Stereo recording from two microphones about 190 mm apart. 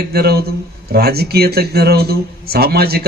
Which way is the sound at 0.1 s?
55° right (ahead or behind).